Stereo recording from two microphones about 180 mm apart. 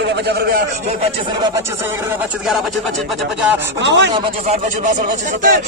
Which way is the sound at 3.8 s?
75° right (ahead or behind).